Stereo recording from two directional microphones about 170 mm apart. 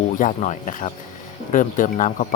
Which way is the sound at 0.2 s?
45° left (ahead or behind).